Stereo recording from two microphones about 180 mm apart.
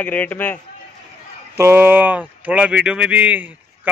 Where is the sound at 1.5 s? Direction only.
15° right (ahead or behind).